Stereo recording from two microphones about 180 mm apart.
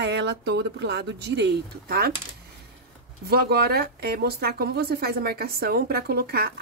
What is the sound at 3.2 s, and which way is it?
Speech, 60° right (ahead or behind).